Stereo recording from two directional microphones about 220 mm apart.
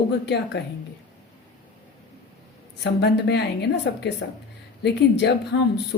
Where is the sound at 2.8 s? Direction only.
50° left (ahead or behind).